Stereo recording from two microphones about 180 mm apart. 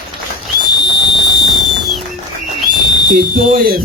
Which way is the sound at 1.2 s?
Centre (ahead or behind).